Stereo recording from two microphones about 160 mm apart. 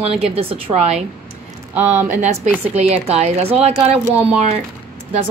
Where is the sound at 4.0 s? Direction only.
10° right (ahead or behind).